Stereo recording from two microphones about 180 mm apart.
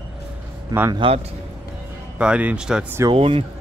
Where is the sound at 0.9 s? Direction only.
30° right (ahead or behind).